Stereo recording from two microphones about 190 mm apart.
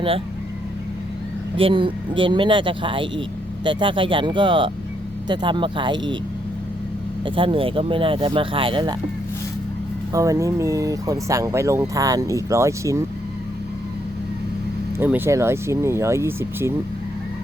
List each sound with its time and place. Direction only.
1.5 s speech: 25° right (ahead or behind)
7.3 s speech: 25° right (ahead or behind)
10.1 s speech: 15° right (ahead or behind)
14.9 s speech: 10° right (ahead or behind)